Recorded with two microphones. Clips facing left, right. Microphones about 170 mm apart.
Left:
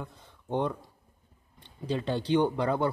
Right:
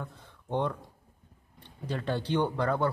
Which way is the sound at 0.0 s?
15° left (ahead or behind).